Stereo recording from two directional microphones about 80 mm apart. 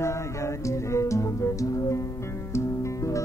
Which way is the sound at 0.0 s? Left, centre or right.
Left.